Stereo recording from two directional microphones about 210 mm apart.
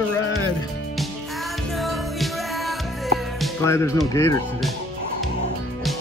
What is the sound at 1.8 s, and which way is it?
Music, centre (ahead or behind).